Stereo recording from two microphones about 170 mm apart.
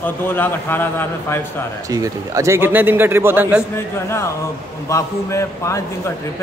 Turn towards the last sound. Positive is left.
turn(degrees=15)  # may be behind; listen again after turning